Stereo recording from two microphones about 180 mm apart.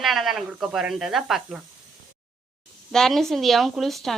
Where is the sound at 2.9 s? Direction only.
Centre (ahead or behind).